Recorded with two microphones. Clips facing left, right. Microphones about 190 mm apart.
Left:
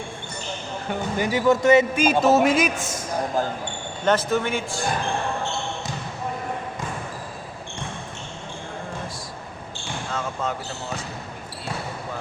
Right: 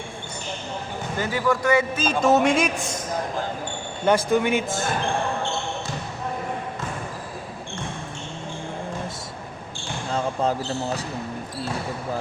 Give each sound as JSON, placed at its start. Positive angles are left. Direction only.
{"t": 1.2, "sound": "speech", "side_deg": 20}
{"t": 2.2, "sound": "a man's voice", "side_deg": 5}
{"t": 4.0, "sound": "speech", "side_deg": -10}
{"t": 10.1, "sound": "basketball bounce", "side_deg": -30}